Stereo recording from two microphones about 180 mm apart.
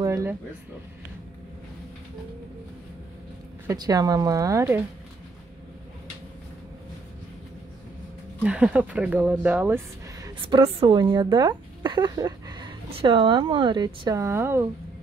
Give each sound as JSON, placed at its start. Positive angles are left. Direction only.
{"t": 0.0, "sound": "speech", "side_deg": -15}
{"t": 3.6, "sound": "speech", "side_deg": -20}
{"t": 8.5, "sound": "speech", "side_deg": -5}
{"t": 10.4, "sound": "speech", "side_deg": -30}